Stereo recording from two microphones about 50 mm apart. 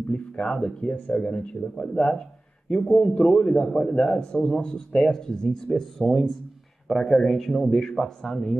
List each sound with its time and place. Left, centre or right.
0.1 s a man's voice: centre